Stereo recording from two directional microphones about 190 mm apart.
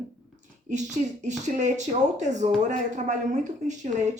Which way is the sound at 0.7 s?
40° right (ahead or behind).